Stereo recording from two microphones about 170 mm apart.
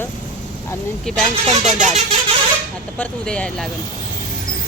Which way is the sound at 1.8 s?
40° right (ahead or behind).